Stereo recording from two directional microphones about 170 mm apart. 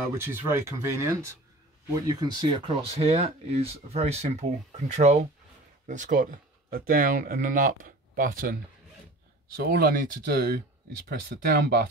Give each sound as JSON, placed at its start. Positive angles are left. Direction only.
{"t": 0.2, "sound": "speech", "side_deg": -15}
{"t": 9.6, "sound": "speech", "side_deg": -65}